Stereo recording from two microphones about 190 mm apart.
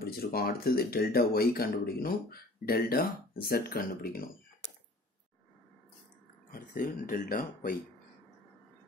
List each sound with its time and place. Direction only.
0.1 s speech: 50° left (ahead or behind)
6.5 s speech: 45° left (ahead or behind)